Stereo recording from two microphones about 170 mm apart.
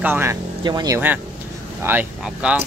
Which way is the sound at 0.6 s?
25° right (ahead or behind).